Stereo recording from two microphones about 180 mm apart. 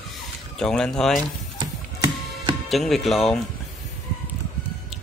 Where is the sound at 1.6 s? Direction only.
25° right (ahead or behind).